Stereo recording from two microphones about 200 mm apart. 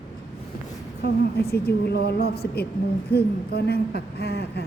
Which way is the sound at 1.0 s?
55° left (ahead or behind).